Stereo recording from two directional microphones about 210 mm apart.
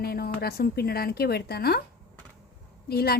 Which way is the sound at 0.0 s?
45° left (ahead or behind).